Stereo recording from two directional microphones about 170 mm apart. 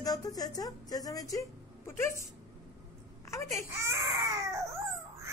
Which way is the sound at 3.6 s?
15° right (ahead or behind).